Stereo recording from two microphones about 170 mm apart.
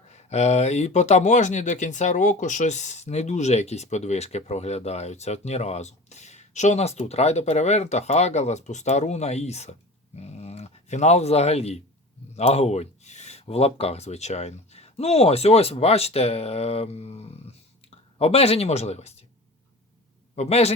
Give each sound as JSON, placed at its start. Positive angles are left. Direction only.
{"t": 0.1, "sound": "speech", "side_deg": 40}
{"t": 20.3, "sound": "a man's voice", "side_deg": 40}